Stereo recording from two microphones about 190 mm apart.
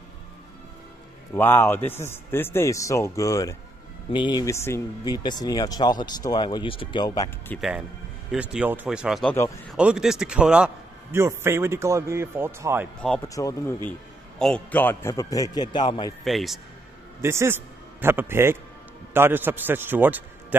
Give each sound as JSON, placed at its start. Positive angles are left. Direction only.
{"t": 1.3, "sound": "a man's voice", "side_deg": 10}
{"t": 7.5, "sound": "a man's voice", "side_deg": 0}
{"t": 13.3, "sound": "a man's voice", "side_deg": 15}
{"t": 14.4, "sound": "a man's voice", "side_deg": 5}
{"t": 16.3, "sound": "speech", "side_deg": 0}
{"t": 17.2, "sound": "a man's voice", "side_deg": -15}